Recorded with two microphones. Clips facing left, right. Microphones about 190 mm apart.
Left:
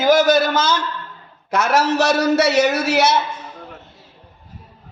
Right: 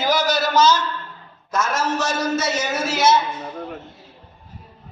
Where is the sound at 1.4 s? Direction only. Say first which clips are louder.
Left 5 dB; 65° left (ahead or behind).